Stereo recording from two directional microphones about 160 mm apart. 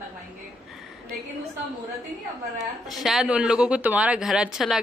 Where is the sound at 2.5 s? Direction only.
Centre (ahead or behind).